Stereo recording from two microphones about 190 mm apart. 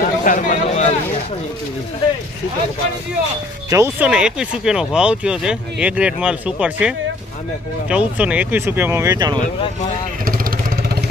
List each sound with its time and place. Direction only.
0.0 s a sound: 45° left (ahead or behind)
3.7 s speech: 10° right (ahead or behind)
10.2 s vehicle: 50° right (ahead or behind)